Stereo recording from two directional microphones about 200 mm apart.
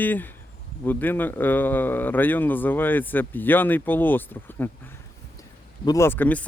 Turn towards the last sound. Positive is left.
turn(degrees=10)  # may be behind; listen again after turning